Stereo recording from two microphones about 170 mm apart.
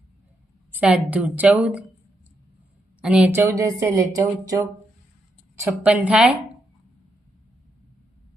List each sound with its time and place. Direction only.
0.7 s speech: 5° right (ahead or behind)
3.0 s speech: 5° right (ahead or behind)